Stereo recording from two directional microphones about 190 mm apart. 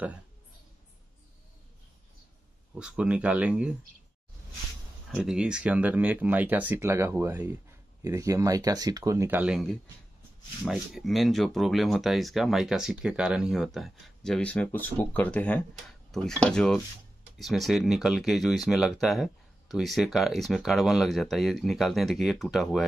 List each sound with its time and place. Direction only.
2.7 s speech: 5° right (ahead or behind)
5.1 s speech: 5° right (ahead or behind)